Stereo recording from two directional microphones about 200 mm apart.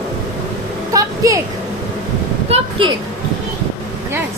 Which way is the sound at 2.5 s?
25° right (ahead or behind).